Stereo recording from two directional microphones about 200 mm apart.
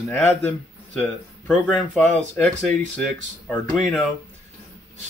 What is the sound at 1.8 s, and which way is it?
Speech, 5° left (ahead or behind).